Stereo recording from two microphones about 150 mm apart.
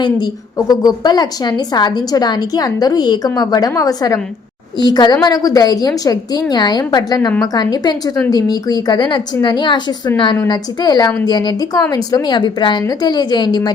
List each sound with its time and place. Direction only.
0.7 s a woman's voice: 25° left (ahead or behind)